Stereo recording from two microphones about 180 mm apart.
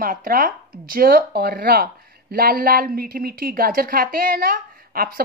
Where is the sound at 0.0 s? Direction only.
50° right (ahead or behind).